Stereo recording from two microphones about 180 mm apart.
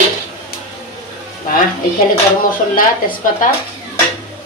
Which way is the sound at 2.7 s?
50° left (ahead or behind).